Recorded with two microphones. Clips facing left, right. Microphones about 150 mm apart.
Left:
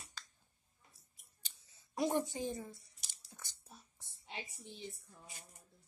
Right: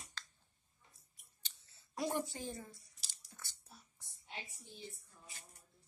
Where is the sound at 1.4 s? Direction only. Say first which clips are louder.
Right 1 dB; 10° left (ahead or behind).